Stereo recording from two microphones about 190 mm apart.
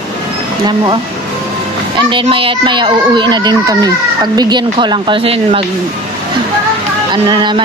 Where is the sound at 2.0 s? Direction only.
25° right (ahead or behind).